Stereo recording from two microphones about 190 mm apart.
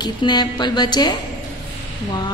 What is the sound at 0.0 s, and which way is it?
A woman's voice, 25° left (ahead or behind).